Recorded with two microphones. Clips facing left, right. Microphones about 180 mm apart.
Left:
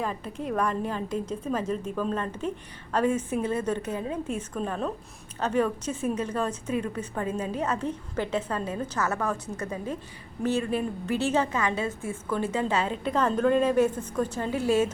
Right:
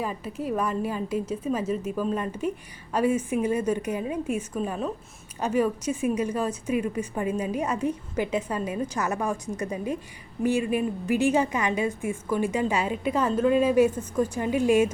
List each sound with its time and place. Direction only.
0.0 s a woman's voice: 5° right (ahead or behind)